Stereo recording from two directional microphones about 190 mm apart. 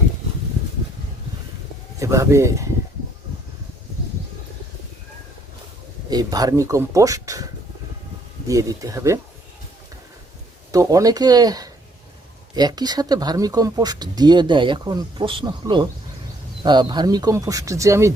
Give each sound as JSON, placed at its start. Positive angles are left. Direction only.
{"t": 2.0, "sound": "speech", "side_deg": -15}
{"t": 6.1, "sound": "speech", "side_deg": -20}
{"t": 10.7, "sound": "speech", "side_deg": -15}